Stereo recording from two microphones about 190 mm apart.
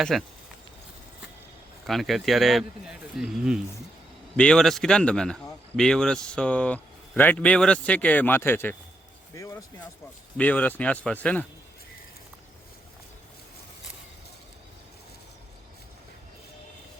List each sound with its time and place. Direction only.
0.0 s speech: centre (ahead or behind)
1.9 s speech: centre (ahead or behind)
9.3 s a sound: 15° left (ahead or behind)
10.3 s speech: 10° left (ahead or behind)